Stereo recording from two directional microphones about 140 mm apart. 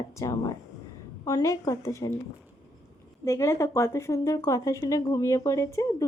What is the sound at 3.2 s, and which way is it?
Speech, 20° left (ahead or behind).